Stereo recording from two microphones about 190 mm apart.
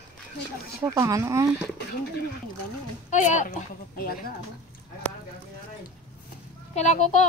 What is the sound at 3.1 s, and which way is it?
A woman's voice, 40° left (ahead or behind).